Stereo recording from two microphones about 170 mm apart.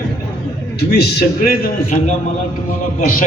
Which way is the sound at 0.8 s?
70° left (ahead or behind).